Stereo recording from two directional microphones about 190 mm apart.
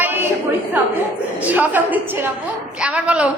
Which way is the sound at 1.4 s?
10° right (ahead or behind).